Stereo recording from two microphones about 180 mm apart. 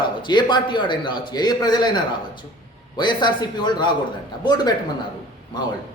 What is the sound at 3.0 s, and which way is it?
A man's voice, 25° left (ahead or behind).